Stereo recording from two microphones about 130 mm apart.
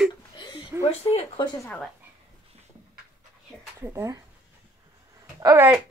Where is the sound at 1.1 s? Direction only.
45° left (ahead or behind).